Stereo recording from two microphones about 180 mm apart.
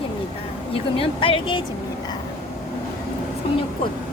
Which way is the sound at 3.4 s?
30° left (ahead or behind).